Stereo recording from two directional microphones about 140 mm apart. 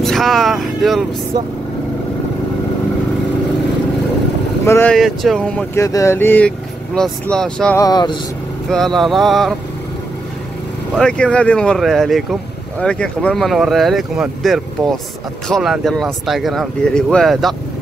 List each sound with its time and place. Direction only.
0.0 s speech: centre (ahead or behind)
4.6 s a sound: 15° left (ahead or behind)
4.9 s speech: centre (ahead or behind)
5.8 s a sound: 20° left (ahead or behind)
7.0 s speech: 5° left (ahead or behind)
7.7 s speech: 25° left (ahead or behind)
8.6 s speech: centre (ahead or behind)
11.0 s speech: 5° left (ahead or behind)